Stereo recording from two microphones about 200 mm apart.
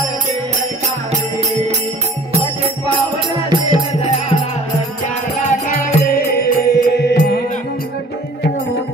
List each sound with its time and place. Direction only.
2.3 s music: 25° right (ahead or behind)
5.5 s music: 40° left (ahead or behind); by 7.3 s 55° left (ahead or behind)